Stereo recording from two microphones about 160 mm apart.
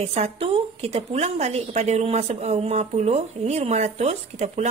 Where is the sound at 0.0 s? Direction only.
40° right (ahead or behind).